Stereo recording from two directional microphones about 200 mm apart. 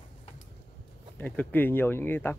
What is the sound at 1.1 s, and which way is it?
Speech, 10° left (ahead or behind).